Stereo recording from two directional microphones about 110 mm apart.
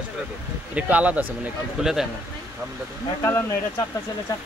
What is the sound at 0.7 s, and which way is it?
A man's voice, 10° right (ahead or behind).